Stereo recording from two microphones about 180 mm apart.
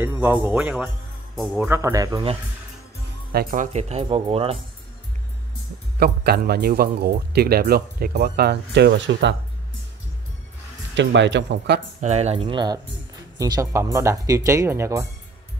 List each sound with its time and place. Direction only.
0.0 s speech: 10° right (ahead or behind)
1.7 s speech: 15° right (ahead or behind)
3.3 s speech: 55° right (ahead or behind); by 4.6 s 30° right (ahead or behind)
5.9 s a man's voice: 60° right (ahead or behind); by 9.3 s 80° right
11.0 s speech: 85° right
12.0 s speech: 40° right (ahead or behind)
12.5 s speech: 20° right (ahead or behind)